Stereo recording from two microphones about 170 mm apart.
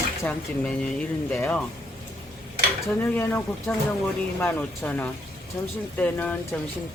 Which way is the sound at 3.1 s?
10° left (ahead or behind).